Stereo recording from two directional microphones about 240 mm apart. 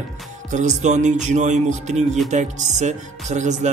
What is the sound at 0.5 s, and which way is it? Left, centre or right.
Speech, right.